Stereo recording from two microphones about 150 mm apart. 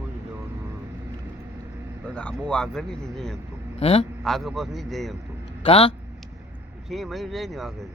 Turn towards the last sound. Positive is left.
turn(degrees=0)  # may be behind; listen again after turning